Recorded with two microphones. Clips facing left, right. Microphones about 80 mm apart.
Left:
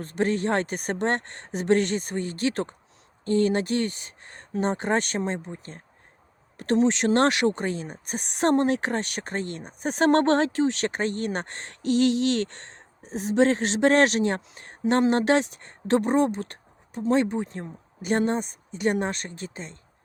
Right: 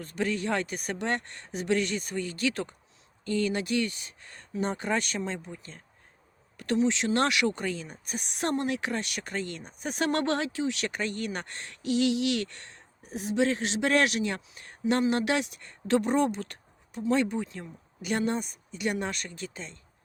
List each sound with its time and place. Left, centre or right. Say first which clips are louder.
0.0 s a woman's voice: left 5 dB; left
6.7 s a woman's voice: left 5 dB; left